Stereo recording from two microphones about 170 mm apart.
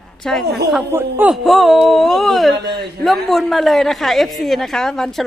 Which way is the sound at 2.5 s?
75° right (ahead or behind).